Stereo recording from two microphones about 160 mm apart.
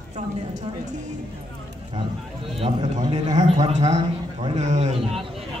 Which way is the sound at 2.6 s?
45° right (ahead or behind).